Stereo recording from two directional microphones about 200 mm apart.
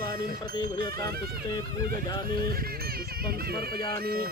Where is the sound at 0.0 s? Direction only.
20° left (ahead or behind).